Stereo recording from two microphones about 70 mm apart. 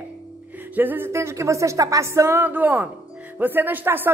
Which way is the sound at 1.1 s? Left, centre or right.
Right.